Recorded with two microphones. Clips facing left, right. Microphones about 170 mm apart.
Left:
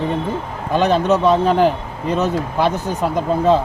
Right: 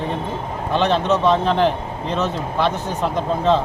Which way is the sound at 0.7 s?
10° left (ahead or behind).